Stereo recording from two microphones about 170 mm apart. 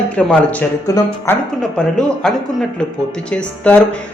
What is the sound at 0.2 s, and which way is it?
Speech, 5° left (ahead or behind).